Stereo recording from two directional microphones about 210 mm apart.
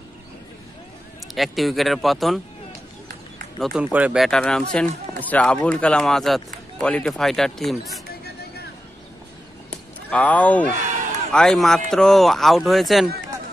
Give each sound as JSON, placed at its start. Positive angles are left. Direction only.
{"t": 1.3, "sound": "speech", "side_deg": 0}
{"t": 3.5, "sound": "speech", "side_deg": 0}
{"t": 8.1, "sound": "vehicle", "side_deg": 50}
{"t": 9.7, "sound": "a sound", "side_deg": 5}
{"t": 11.3, "sound": "speech", "side_deg": 0}